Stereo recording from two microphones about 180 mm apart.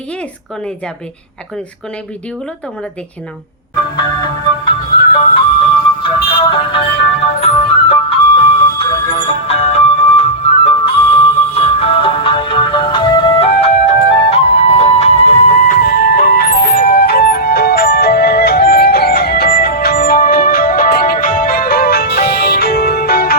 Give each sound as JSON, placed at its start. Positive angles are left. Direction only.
{"t": 3.9, "sound": "music", "side_deg": 25}